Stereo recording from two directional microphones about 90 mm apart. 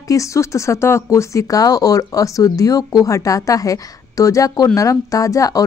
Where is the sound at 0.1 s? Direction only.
35° left (ahead or behind).